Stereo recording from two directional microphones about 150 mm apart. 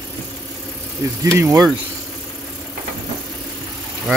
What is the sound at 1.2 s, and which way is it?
Speech, 20° right (ahead or behind).